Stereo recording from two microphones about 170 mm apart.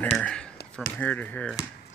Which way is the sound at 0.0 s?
10° left (ahead or behind).